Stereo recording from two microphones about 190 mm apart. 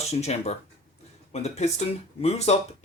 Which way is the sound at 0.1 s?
35° left (ahead or behind).